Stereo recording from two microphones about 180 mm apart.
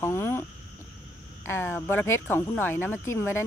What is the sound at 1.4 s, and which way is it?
Speech, 15° left (ahead or behind).